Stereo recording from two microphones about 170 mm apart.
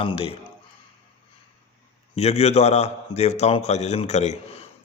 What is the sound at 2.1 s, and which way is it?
A man's voice, 35° left (ahead or behind).